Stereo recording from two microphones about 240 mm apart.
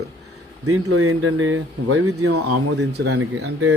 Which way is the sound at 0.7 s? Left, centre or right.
Right.